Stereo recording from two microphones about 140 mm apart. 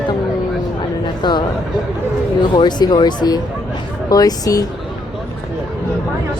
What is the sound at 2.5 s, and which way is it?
Speech, 35° left (ahead or behind).